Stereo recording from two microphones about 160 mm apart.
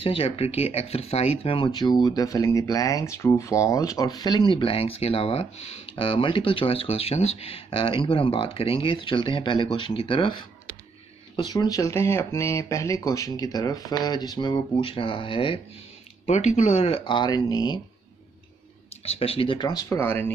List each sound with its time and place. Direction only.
0.0 s speech: 35° left (ahead or behind)
16.3 s speech: 45° left (ahead or behind); by 17.7 s 25° left (ahead or behind)
19.0 s speech: 35° left (ahead or behind); by 20.3 s 10° left (ahead or behind)